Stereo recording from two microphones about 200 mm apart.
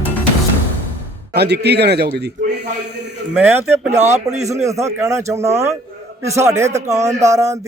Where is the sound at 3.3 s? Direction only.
10° right (ahead or behind).